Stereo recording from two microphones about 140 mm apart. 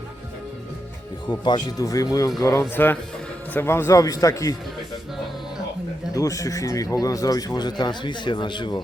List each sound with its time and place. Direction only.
1.3 s speech: 30° left (ahead or behind)
6.1 s speech: 25° left (ahead or behind)